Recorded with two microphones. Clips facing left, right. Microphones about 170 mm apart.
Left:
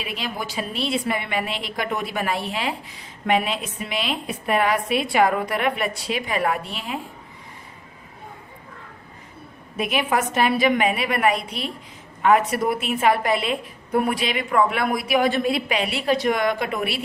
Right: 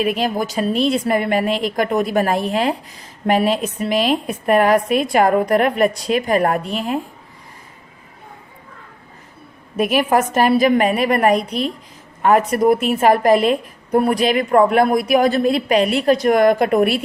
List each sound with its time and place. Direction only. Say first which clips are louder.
0.0 s a woman's voice: right 11 dB; 45° right (ahead or behind)
9.7 s a woman's voice: right 7 dB; 45° right (ahead or behind)